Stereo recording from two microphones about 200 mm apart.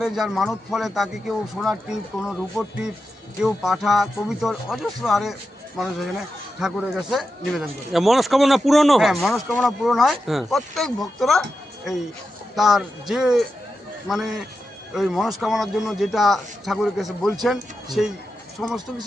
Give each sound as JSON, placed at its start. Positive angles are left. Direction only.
{"t": 0.0, "sound": "speech", "side_deg": 0}
{"t": 12.5, "sound": "speech", "side_deg": 0}